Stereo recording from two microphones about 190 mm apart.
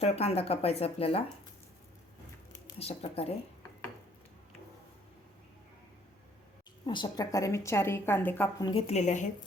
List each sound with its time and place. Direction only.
0.0 s speech: 30° left (ahead or behind)
2.7 s speech: 30° left (ahead or behind)
6.8 s a woman's voice: 25° left (ahead or behind)
8.6 s speech: 30° left (ahead or behind)